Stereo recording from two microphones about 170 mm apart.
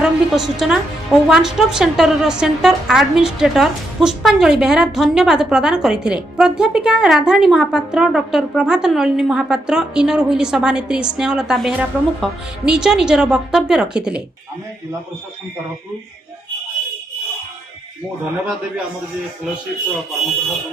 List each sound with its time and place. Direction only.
0.0 s a woman's voice: centre (ahead or behind)